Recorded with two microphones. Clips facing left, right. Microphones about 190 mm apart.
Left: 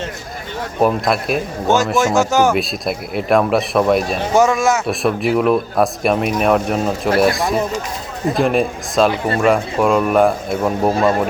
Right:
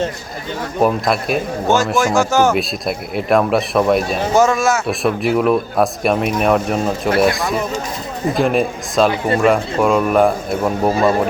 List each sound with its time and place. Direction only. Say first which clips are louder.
0.8 s a man's voice: even; centre (ahead or behind)
2.0 s speech: right 1 dB; 20° left (ahead or behind)
2.5 s a man's voice: even; centre (ahead or behind)
4.4 s speech: even; 15° left (ahead or behind)
4.9 s a man's voice: even; centre (ahead or behind)
8.4 s a man's voice: even; centre (ahead or behind)